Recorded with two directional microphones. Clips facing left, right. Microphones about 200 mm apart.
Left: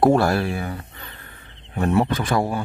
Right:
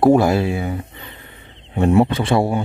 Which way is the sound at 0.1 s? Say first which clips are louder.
Right 4 dB; 20° right (ahead or behind).